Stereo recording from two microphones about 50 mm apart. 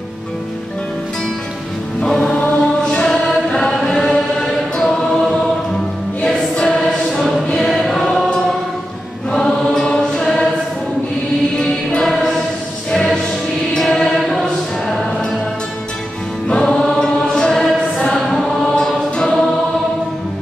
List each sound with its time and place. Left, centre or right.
2.0 s music: centre
2.3 s chant: left
3.3 s choir: centre
6.2 s music: centre
7.1 s choir: centre
9.3 s mantra: centre
11.5 s music: centre
13.7 s chant: centre
16.4 s choir: centre